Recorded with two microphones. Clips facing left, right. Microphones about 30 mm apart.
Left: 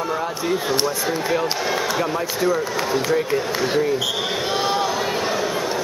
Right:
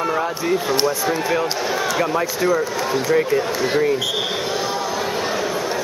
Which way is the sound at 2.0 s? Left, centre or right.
Centre.